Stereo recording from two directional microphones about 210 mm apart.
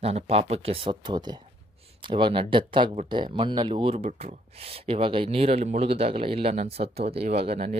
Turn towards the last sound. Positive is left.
turn(degrees=-30)  # may be behind; listen again after turning